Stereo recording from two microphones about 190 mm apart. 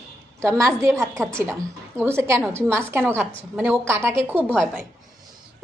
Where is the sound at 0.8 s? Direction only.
15° right (ahead or behind).